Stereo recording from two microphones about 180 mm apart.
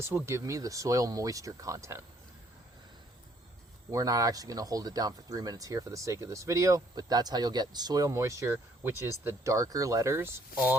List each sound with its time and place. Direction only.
0.0 s speech: 15° right (ahead or behind)
3.9 s speech: 20° right (ahead or behind)